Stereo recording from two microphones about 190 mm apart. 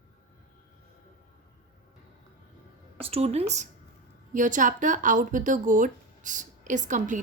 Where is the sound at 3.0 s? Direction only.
30° right (ahead or behind).